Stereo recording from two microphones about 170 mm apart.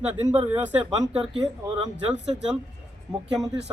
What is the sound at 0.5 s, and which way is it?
Speech, 10° right (ahead or behind).